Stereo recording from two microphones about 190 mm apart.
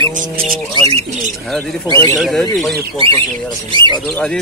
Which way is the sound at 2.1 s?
Centre (ahead or behind).